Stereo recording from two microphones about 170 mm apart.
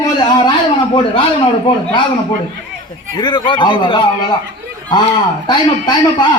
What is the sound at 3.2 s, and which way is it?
Speech, 30° left (ahead or behind).